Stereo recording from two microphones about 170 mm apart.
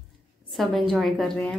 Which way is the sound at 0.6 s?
Centre (ahead or behind).